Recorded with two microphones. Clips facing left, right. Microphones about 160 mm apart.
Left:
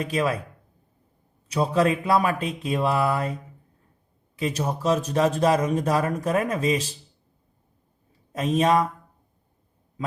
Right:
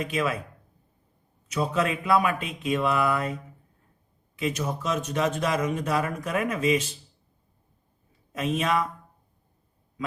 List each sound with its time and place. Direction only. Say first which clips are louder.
0.0 s speech: left 3 dB; 35° left (ahead or behind)
1.5 s speech: left 4 dB; 35° left (ahead or behind)
4.4 s speech: left 2 dB; 35° left (ahead or behind)
8.3 s speech: left 5 dB; 35° left (ahead or behind)